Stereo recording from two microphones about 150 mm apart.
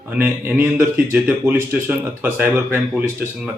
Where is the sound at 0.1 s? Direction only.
10° right (ahead or behind).